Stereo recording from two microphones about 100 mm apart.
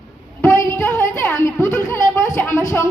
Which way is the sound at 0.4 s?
25° left (ahead or behind).